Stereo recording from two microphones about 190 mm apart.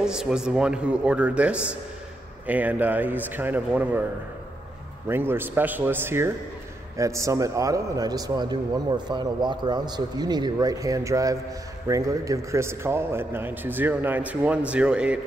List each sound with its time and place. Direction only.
0.0 s a man's voice: 5° right (ahead or behind)